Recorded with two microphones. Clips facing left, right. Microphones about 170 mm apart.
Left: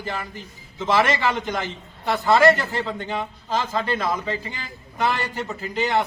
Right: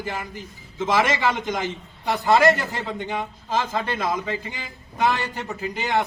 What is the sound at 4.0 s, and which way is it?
A man's voice, 15° right (ahead or behind).